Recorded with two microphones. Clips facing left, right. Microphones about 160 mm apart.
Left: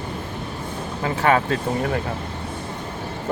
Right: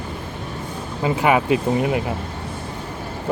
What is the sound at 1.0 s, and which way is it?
Speech, 15° right (ahead or behind).